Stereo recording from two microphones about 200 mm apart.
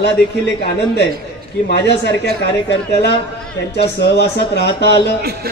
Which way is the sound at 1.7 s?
55° left (ahead or behind).